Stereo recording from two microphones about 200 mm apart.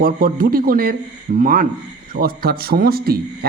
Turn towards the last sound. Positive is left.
turn(degrees=-50)  # may be behind; listen again after turning